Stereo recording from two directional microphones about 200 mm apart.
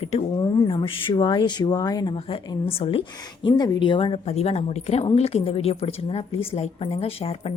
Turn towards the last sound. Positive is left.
turn(degrees=30)  # may be behind; listen again after turning